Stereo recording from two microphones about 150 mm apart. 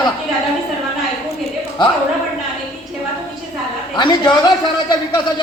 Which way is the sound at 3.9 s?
30° left (ahead or behind).